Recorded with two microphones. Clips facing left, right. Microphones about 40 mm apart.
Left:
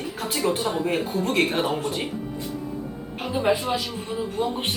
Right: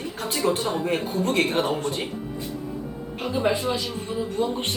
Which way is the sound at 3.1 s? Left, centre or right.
Centre.